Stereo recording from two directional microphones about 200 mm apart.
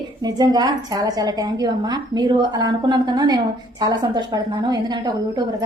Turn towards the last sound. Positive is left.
turn(degrees=-20)  # may be behind; listen again after turning